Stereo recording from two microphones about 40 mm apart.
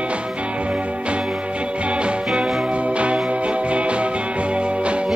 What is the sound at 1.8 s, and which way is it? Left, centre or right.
Music, right.